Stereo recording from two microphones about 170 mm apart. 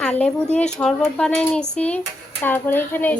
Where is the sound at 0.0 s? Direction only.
10° left (ahead or behind).